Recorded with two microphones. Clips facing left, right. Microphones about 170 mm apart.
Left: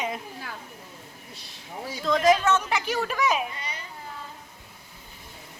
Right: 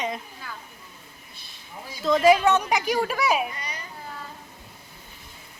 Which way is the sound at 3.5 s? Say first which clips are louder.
Right 1 dB; 25° left (ahead or behind).